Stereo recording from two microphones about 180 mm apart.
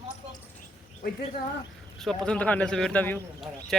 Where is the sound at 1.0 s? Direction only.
55° left (ahead or behind).